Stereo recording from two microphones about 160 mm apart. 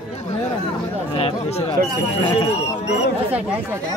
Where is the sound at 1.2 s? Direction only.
35° left (ahead or behind).